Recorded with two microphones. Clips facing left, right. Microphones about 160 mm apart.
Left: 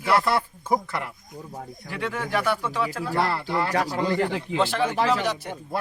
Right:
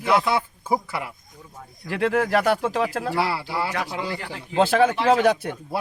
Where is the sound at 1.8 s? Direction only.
85° right.